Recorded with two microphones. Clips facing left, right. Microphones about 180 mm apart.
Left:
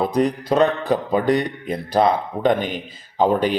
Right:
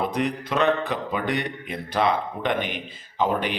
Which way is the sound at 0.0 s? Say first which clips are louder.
Left 6 dB; 35° left (ahead or behind).